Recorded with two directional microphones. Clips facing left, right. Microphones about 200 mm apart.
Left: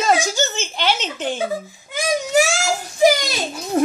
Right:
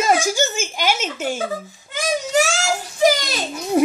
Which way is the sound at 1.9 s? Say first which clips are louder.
Left 2 dB; 10° left (ahead or behind).